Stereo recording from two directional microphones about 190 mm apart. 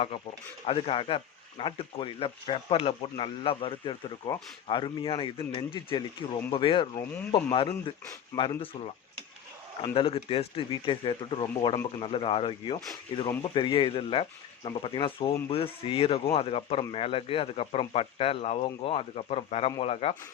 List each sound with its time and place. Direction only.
0.7 s speech: 30° left (ahead or behind)
9.8 s speech: 30° left (ahead or behind)